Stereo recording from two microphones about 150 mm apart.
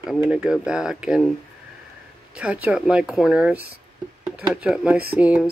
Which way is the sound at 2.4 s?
10° right (ahead or behind).